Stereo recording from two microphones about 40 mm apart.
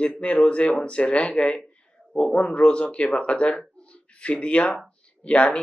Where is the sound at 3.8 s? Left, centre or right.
Left.